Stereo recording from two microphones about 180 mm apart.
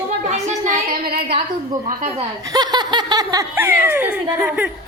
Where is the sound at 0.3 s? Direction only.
40° right (ahead or behind).